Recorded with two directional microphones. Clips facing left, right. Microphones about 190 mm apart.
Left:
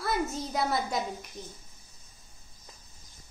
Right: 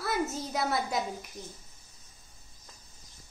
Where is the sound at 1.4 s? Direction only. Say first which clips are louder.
Left 1 dB; 25° left (ahead or behind).